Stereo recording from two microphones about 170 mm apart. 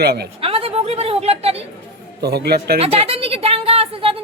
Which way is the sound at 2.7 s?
35° right (ahead or behind).